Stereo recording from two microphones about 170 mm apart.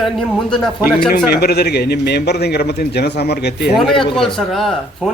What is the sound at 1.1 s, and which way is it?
A man's voice, 65° left (ahead or behind).